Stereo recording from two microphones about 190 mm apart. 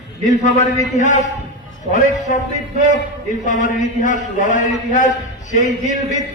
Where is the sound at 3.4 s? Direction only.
40° left (ahead or behind).